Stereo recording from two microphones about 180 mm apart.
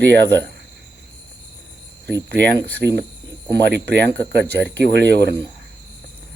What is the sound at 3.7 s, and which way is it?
Speech, 70° right (ahead or behind).